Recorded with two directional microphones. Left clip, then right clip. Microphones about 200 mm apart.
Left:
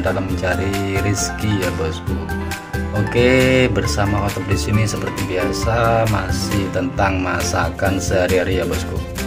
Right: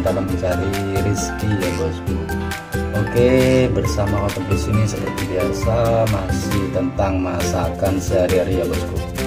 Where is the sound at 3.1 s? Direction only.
5° right (ahead or behind).